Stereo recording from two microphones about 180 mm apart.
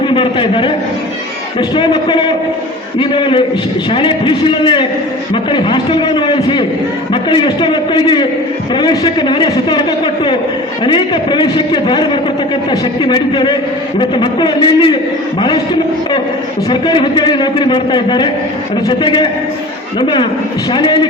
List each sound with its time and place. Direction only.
0.1 s a man's voice: 30° left (ahead or behind)
16.6 s a man's voice: 25° left (ahead or behind)